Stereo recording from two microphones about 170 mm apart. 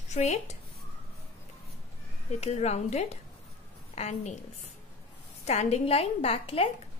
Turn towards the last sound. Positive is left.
turn(degrees=35)  # may be behind; listen again after turning